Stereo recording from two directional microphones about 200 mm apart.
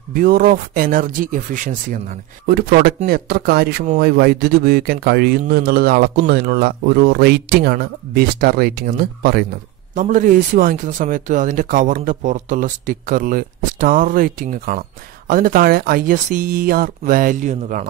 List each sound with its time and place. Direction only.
0.1 s speech: 45° right (ahead or behind)
9.9 s speech: 40° right (ahead or behind)